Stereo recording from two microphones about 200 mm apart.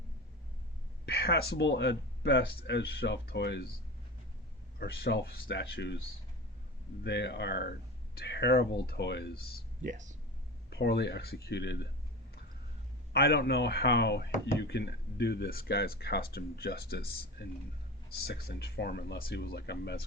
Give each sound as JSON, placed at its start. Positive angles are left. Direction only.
{"t": 1.0, "sound": "speech", "side_deg": 55}
{"t": 4.8, "sound": "speech", "side_deg": 55}
{"t": 7.0, "sound": "speech", "side_deg": 60}
{"t": 9.8, "sound": "speech", "side_deg": -40}
{"t": 10.7, "sound": "speech", "side_deg": 55}
{"t": 13.1, "sound": "speech", "side_deg": 55}